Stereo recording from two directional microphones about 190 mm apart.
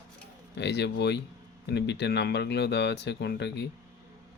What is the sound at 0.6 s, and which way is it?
Speech, 65° left (ahead or behind).